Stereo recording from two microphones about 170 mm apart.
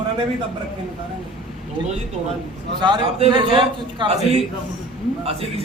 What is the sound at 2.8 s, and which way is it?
A man's voice, 25° right (ahead or behind).